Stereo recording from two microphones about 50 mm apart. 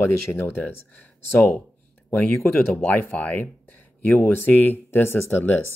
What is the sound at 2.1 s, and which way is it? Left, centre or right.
Speech, left.